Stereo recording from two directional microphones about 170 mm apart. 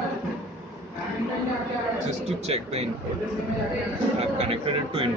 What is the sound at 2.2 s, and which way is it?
Speech, 40° right (ahead or behind).